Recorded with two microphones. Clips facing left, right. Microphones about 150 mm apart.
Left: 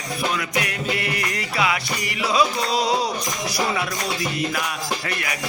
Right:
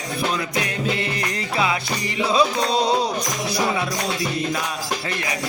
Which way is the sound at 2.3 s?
30° right (ahead or behind).